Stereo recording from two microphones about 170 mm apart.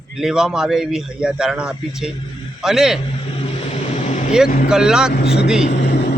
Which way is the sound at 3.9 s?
40° left (ahead or behind).